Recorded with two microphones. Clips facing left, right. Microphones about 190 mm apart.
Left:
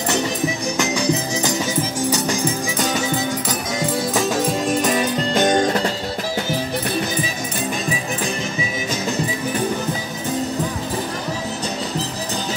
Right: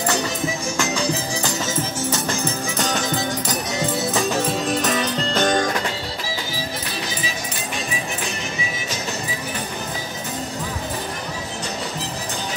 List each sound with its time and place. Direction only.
0.7 s music: 15° left (ahead or behind)
5.4 s music: 20° left (ahead or behind)